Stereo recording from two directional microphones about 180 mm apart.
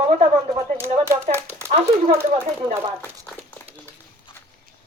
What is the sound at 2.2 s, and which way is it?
Speech, 15° right (ahead or behind).